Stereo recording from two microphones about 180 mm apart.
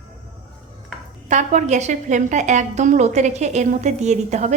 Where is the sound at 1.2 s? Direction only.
40° right (ahead or behind).